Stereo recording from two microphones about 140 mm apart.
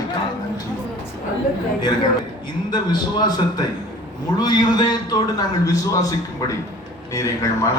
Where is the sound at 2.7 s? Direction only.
30° left (ahead or behind).